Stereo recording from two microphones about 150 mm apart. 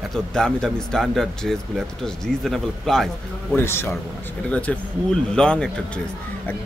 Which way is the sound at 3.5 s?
15° left (ahead or behind).